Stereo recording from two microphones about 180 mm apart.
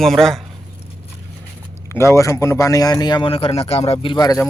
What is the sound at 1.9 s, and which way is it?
A man's voice, 15° left (ahead or behind).